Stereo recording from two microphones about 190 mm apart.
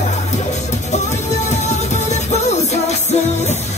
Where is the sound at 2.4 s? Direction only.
35° left (ahead or behind).